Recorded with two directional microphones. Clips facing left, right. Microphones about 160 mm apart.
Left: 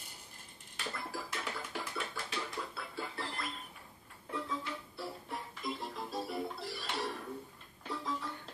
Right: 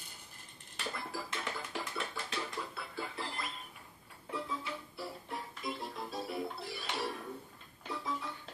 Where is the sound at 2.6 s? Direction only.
5° right (ahead or behind).